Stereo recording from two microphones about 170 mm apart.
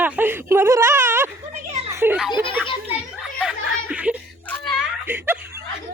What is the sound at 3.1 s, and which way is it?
Chuckle, 5° right (ahead or behind).